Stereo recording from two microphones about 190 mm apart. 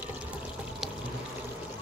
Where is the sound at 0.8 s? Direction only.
Centre (ahead or behind).